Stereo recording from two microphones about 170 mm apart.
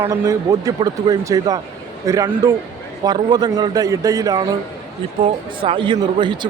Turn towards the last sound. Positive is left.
turn(degrees=-25)  # may be behind; listen again after turning